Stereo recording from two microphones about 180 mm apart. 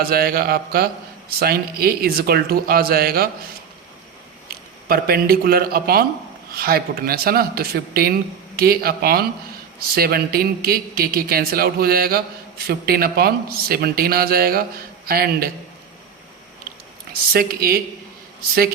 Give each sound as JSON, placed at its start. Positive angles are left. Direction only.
{"t": 0.0, "sound": "speech", "side_deg": -55}
{"t": 4.4, "sound": "speech", "side_deg": -55}
{"t": 17.3, "sound": "speech", "side_deg": -55}